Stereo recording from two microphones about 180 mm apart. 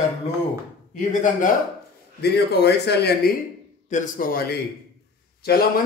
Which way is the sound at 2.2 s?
65° left (ahead or behind).